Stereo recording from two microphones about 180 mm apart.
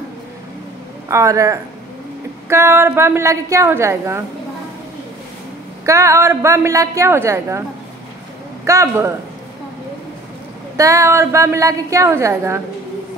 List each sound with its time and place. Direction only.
1.0 s a woman's voice: 15° right (ahead or behind)
5.9 s a woman's voice: 15° right (ahead or behind)
8.6 s a woman's voice: 15° right (ahead or behind)
10.8 s a woman's voice: 15° right (ahead or behind)